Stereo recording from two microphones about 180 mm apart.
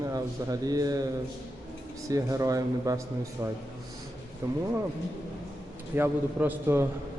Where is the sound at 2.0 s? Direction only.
20° right (ahead or behind).